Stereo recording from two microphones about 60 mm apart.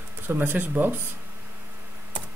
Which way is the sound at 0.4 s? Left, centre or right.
Right.